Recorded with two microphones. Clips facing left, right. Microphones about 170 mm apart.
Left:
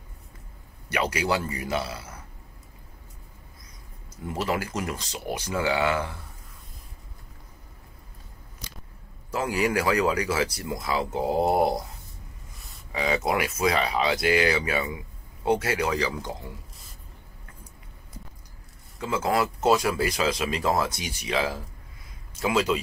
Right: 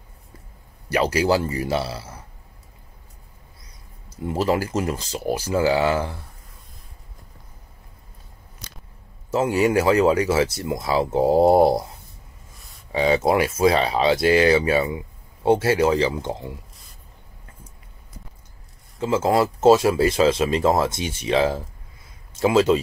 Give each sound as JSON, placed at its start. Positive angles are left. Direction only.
{"t": 0.8, "sound": "speech", "side_deg": -30}
{"t": 4.3, "sound": "speech", "side_deg": -30}
{"t": 9.3, "sound": "speech", "side_deg": -25}
{"t": 12.9, "sound": "speech", "side_deg": -30}
{"t": 18.9, "sound": "speech", "side_deg": -30}